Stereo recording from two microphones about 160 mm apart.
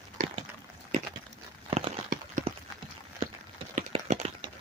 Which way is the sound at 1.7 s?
35° right (ahead or behind).